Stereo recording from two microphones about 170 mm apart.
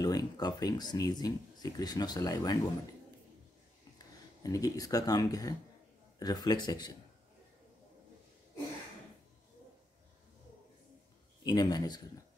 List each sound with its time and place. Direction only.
0.0 s speech: 25° left (ahead or behind)
4.4 s speech: 20° left (ahead or behind)
11.4 s speech: 25° left (ahead or behind)